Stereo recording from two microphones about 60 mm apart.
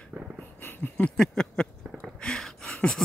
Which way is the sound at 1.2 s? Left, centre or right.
Centre.